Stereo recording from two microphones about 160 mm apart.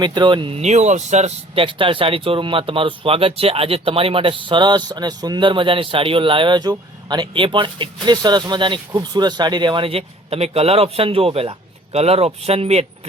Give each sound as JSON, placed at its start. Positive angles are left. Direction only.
{"t": 0.0, "sound": "speech", "side_deg": -30}